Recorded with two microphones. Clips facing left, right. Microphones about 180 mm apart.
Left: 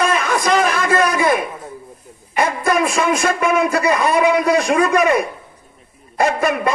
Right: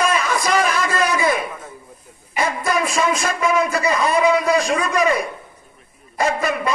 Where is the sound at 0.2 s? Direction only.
55° left (ahead or behind).